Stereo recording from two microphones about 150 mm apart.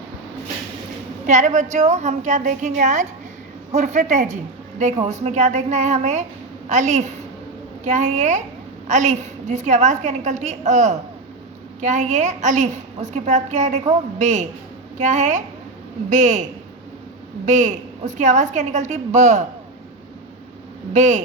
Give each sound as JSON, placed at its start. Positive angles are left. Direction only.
{"t": 1.3, "sound": "a woman's voice", "side_deg": -55}
{"t": 20.9, "sound": "a woman's voice", "side_deg": -55}